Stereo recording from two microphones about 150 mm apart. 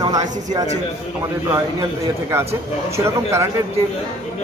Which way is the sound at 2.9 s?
15° right (ahead or behind).